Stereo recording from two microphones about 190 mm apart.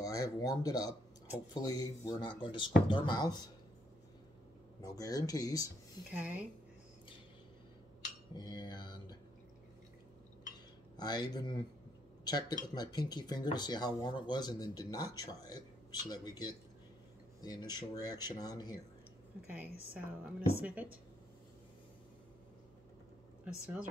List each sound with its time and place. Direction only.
0.0 s speech: 20° left (ahead or behind)
4.8 s speech: 20° left (ahead or behind)
6.1 s a woman's voice: 10° right (ahead or behind)
8.4 s speech: 20° left (ahead or behind)
11.0 s speech: 20° left (ahead or behind)
19.4 s a woman's voice: 10° right (ahead or behind)
23.4 s a woman's voice: 5° right (ahead or behind)